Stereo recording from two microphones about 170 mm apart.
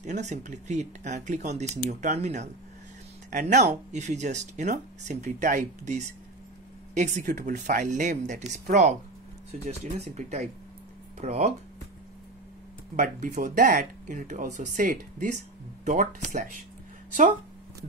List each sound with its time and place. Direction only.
0.0 s speech: 45° right (ahead or behind)
11.1 s speech: 40° right (ahead or behind)
12.9 s speech: 45° right (ahead or behind)